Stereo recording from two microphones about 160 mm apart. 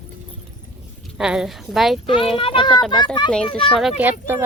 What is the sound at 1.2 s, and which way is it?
Speech, 5° right (ahead or behind).